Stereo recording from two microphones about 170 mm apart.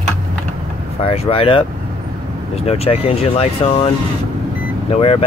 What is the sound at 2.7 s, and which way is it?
Speech, 35° left (ahead or behind).